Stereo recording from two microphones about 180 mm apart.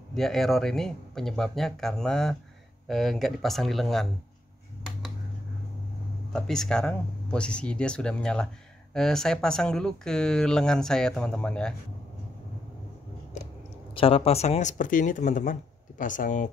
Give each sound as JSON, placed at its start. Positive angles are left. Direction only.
{"t": 0.1, "sound": "speech", "side_deg": 0}
{"t": 6.3, "sound": "speech", "side_deg": 0}
{"t": 13.9, "sound": "speech", "side_deg": 30}